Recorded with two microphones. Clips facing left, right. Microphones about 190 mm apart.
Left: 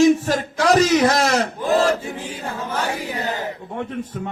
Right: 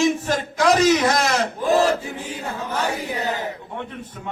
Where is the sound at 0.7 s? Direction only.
40° left (ahead or behind).